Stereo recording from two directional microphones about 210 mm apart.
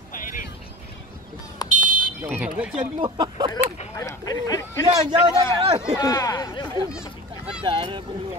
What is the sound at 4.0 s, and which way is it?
Speech, 15° left (ahead or behind).